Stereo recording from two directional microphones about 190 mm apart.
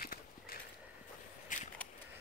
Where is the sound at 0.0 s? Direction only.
50° left (ahead or behind).